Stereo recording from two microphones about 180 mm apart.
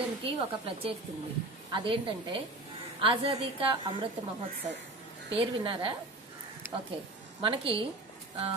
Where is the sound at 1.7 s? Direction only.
30° right (ahead or behind).